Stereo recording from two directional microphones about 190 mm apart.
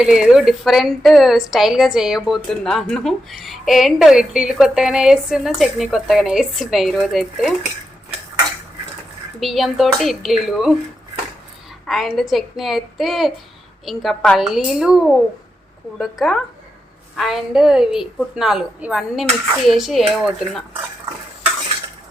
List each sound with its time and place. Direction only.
0.0 s a woman's voice: 5° right (ahead or behind)
9.4 s a woman's voice: centre (ahead or behind)
11.9 s a woman's voice: centre (ahead or behind)